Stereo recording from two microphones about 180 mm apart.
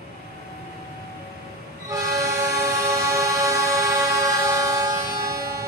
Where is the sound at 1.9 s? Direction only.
15° right (ahead or behind).